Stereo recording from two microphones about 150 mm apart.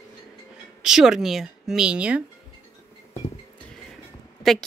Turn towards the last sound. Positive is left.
turn(degrees=0)  # may be behind; listen again after turning